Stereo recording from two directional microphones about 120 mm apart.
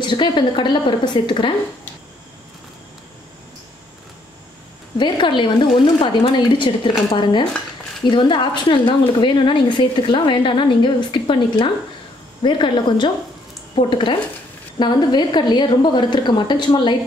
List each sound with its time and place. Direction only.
0.0 s a woman's voice: 40° left (ahead or behind)
4.9 s a woman's voice: 40° left (ahead or behind)